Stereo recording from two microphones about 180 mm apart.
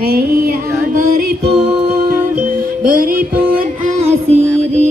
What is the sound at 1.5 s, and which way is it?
Music, 35° right (ahead or behind).